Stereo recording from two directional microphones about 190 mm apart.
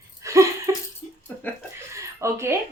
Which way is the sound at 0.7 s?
15° right (ahead or behind).